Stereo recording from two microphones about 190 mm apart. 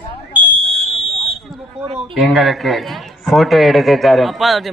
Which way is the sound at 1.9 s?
Centre (ahead or behind).